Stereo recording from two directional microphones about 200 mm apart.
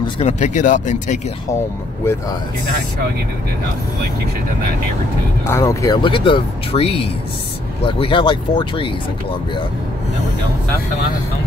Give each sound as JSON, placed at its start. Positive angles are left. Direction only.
{"t": 0.0, "sound": "speech", "side_deg": 35}
{"t": 5.5, "sound": "speech", "side_deg": 15}